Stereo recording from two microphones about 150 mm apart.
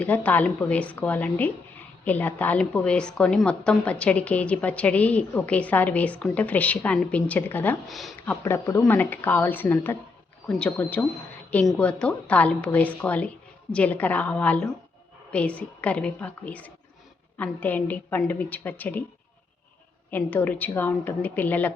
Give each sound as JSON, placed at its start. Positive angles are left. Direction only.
{"t": 0.0, "sound": "a woman's voice", "side_deg": 10}
{"t": 7.9, "sound": "speech", "side_deg": 0}
{"t": 8.2, "sound": "a woman's voice", "side_deg": 15}
{"t": 20.1, "sound": "a woman's voice", "side_deg": 10}